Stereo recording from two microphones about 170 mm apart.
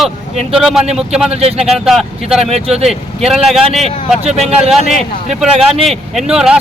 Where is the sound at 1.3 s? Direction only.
35° right (ahead or behind).